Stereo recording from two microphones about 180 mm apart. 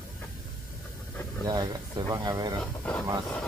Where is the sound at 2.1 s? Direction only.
20° right (ahead or behind).